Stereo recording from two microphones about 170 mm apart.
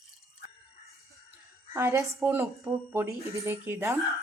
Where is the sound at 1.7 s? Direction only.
15° right (ahead or behind).